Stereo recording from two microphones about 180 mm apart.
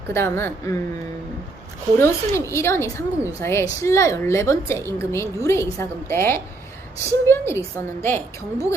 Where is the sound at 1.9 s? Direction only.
15° left (ahead or behind).